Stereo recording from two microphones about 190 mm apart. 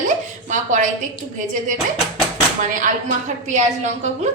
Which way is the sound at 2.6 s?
40° right (ahead or behind).